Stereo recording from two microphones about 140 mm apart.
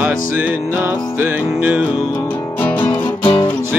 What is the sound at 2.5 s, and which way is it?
Music, 15° left (ahead or behind).